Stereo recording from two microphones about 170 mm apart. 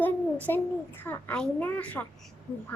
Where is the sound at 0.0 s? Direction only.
10° left (ahead or behind).